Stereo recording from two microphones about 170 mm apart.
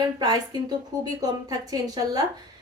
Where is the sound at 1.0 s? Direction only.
20° right (ahead or behind).